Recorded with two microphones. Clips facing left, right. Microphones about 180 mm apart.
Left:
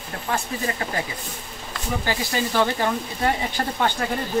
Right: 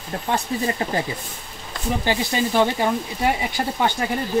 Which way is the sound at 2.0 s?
15° right (ahead or behind).